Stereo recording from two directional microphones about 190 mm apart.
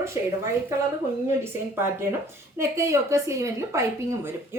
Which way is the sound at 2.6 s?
15° right (ahead or behind).